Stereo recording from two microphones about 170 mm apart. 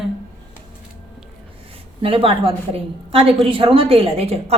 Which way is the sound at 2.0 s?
30° right (ahead or behind).